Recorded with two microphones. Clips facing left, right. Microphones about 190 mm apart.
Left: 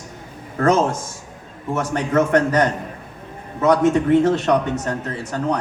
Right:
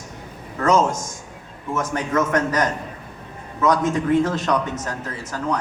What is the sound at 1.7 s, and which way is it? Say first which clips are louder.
A man's voice: left 3 dB; 65° left (ahead or behind).